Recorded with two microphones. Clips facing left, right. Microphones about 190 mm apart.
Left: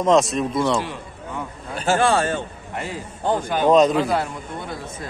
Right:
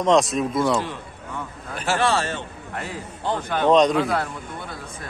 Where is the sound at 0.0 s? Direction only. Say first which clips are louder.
Left 1 dB; centre (ahead or behind).